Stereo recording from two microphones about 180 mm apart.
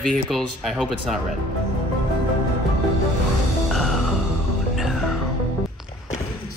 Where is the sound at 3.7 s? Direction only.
Centre (ahead or behind).